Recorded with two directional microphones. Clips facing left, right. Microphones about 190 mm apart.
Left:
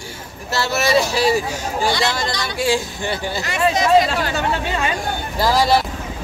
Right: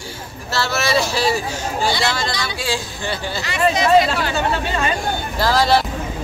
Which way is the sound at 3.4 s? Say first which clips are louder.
Right 1 dB; 45° left (ahead or behind).